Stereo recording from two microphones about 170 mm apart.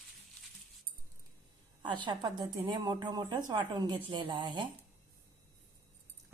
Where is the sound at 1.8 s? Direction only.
25° right (ahead or behind).